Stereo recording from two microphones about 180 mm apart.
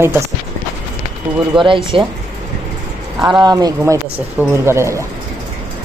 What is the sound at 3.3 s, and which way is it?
Speech, 25° right (ahead or behind).